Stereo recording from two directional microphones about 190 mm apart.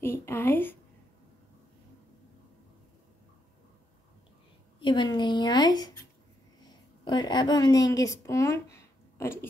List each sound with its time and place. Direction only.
0.0 s speech: 10° left (ahead or behind)
4.7 s a sound: 25° left (ahead or behind)
6.6 s speech: 25° left (ahead or behind)